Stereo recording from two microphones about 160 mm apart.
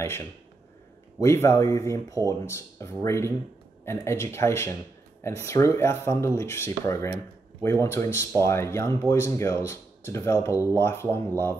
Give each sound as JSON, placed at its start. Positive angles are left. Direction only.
{"t": 1.2, "sound": "speech", "side_deg": 15}